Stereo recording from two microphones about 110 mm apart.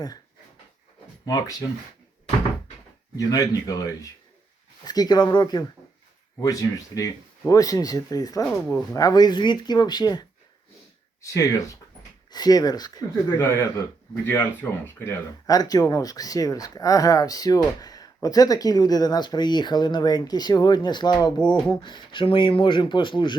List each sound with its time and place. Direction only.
1.2 s speech: 35° left (ahead or behind)
3.2 s speech: 30° left (ahead or behind)
8.4 s speech: 10° left (ahead or behind)
8.7 s speech: 30° left (ahead or behind)
13.4 s speech: 25° left (ahead or behind)
15.4 s speech: 35° left (ahead or behind)